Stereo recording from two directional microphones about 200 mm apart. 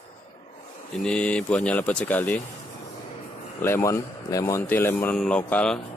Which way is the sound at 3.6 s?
15° left (ahead or behind).